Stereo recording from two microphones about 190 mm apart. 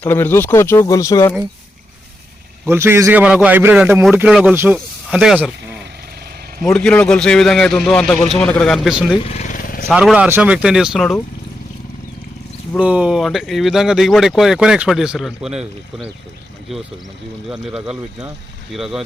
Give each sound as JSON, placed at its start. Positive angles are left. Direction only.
{"t": 0.0, "sound": "speech", "side_deg": 10}
{"t": 2.6, "sound": "a man's voice", "side_deg": -10}
{"t": 6.6, "sound": "speech", "side_deg": 5}
{"t": 9.2, "sound": "vehicle", "side_deg": 35}
{"t": 9.9, "sound": "speech", "side_deg": -5}
{"t": 12.7, "sound": "speech", "side_deg": -5}
{"t": 17.5, "sound": "speech", "side_deg": -5}